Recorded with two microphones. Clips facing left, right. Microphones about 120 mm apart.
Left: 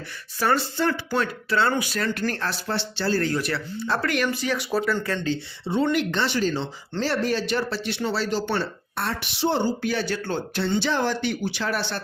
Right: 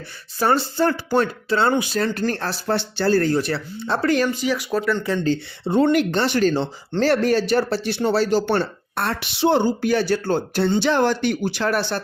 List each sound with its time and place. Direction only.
0.3 s speech: 30° right (ahead or behind)
1.5 s speech: 30° right (ahead or behind)
2.7 s speech: 50° right (ahead or behind)
3.3 s speech: 30° right (ahead or behind)
4.5 s speech: centre (ahead or behind)
5.2 s speech: 50° right (ahead or behind)
8.4 s speech: 60° right (ahead or behind)